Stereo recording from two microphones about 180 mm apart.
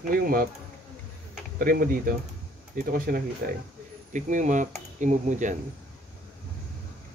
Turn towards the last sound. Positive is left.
turn(degrees=-45)  # may be behind; listen again after turning